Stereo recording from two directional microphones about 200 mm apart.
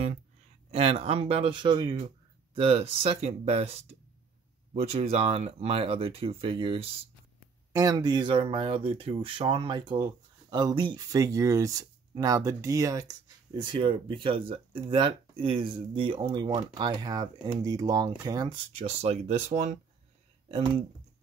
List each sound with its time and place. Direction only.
0.7 s speech: 30° right (ahead or behind)
18.9 s speech: 30° right (ahead or behind)